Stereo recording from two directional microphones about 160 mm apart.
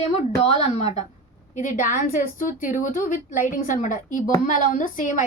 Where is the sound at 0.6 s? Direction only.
45° left (ahead or behind).